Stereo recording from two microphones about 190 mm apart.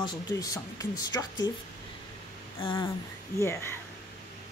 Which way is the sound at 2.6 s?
20° left (ahead or behind).